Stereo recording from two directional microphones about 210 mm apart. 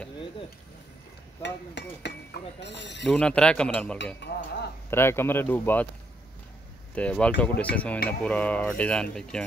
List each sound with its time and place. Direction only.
1.4 s speech: 55° left (ahead or behind)
3.1 s speech: 5° left (ahead or behind)
4.2 s speech: 55° left (ahead or behind)
4.9 s cutlery: 10° left (ahead or behind)
7.0 s cutlery: 5° left (ahead or behind)
8.2 s speech: 5° left (ahead or behind)